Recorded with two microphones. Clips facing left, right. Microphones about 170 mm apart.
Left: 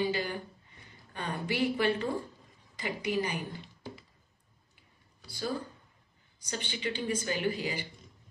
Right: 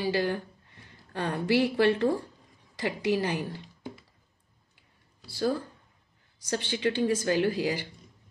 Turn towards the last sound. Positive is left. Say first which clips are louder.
# right 6 dB
turn(degrees=-90)